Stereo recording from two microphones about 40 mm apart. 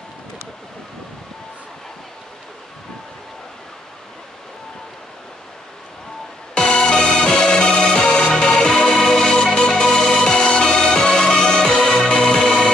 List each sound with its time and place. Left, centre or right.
6.5 s music: left